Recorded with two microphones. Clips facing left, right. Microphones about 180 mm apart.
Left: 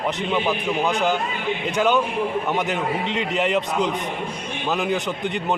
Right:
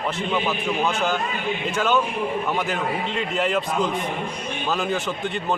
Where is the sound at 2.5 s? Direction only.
20° left (ahead or behind).